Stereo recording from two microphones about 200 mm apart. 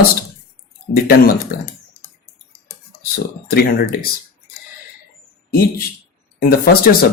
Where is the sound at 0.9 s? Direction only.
50° left (ahead or behind).